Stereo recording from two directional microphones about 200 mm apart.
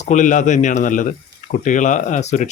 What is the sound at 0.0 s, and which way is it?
Speech, 40° left (ahead or behind).